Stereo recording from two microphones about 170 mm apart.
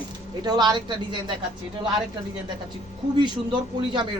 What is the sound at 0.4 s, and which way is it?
Speech, 25° right (ahead or behind).